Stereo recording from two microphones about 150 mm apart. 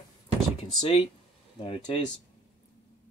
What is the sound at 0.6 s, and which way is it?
Speech, 40° left (ahead or behind).